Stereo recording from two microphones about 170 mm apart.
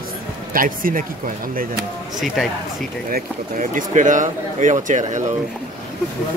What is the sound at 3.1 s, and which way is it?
Speech, 55° right (ahead or behind).